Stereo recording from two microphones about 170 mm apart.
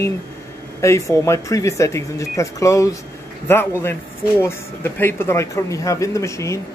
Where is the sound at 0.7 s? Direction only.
15° left (ahead or behind).